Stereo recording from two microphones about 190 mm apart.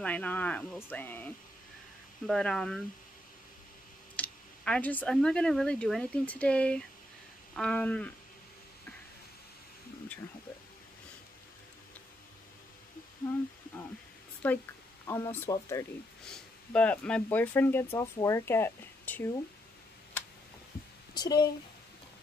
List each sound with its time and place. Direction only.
0.0 s speech: 10° left (ahead or behind)
4.2 s speech: 5° left (ahead or behind)
14.4 s speech: 10° left (ahead or behind)
21.1 s speech: 20° left (ahead or behind)